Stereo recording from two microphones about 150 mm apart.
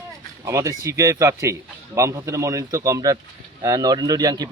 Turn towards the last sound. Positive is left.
turn(degrees=-25)  # may be behind; listen again after turning